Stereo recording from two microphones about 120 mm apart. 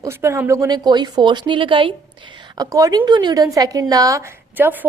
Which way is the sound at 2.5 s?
30° right (ahead or behind).